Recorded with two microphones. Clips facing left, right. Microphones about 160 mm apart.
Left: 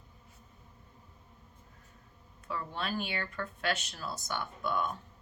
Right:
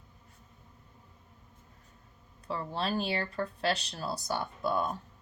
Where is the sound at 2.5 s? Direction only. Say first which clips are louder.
Right 4 dB; 30° right (ahead or behind).